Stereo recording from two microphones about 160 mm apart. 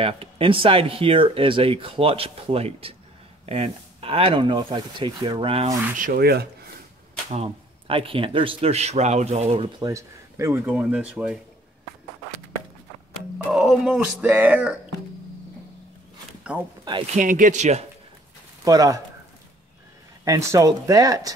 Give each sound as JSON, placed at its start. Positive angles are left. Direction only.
{"t": 0.0, "sound": "speech", "side_deg": -35}
{"t": 5.9, "sound": "speech", "side_deg": -70}
{"t": 7.2, "sound": "speech", "side_deg": -40}
{"t": 9.8, "sound": "speech", "side_deg": -20}
{"t": 13.5, "sound": "speech", "side_deg": 0}
{"t": 16.5, "sound": "speech", "side_deg": -10}
{"t": 17.0, "sound": "speech", "side_deg": -55}
{"t": 18.6, "sound": "speech", "side_deg": -20}
{"t": 20.2, "sound": "speech", "side_deg": -20}